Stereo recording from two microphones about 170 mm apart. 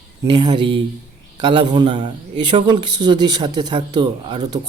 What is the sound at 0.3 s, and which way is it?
Speech, 25° right (ahead or behind).